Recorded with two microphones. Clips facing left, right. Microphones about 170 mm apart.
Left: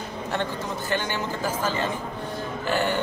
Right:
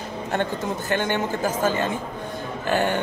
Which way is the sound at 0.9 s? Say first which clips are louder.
Right 4 dB; 50° right (ahead or behind).